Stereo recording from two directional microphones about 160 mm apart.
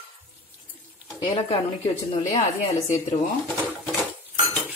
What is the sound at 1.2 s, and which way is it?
Speech, 35° left (ahead or behind).